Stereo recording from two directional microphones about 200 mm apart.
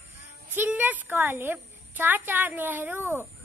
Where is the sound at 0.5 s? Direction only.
10° right (ahead or behind).